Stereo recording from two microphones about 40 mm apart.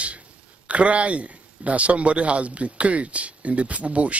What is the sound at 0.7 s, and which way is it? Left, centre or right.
Speech, right.